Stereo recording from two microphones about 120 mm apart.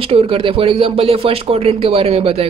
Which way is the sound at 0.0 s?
50° right (ahead or behind).